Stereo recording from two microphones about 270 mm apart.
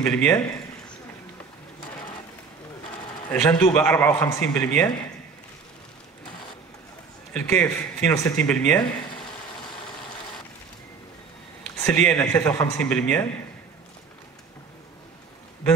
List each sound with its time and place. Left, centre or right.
0.0 s a man's voice: centre
3.3 s a man's voice: centre
7.3 s a man's voice: centre
11.7 s a man's voice: centre